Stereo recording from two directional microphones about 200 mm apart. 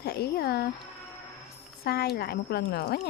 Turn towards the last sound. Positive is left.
turn(degrees=55)  # may be behind; listen again after turning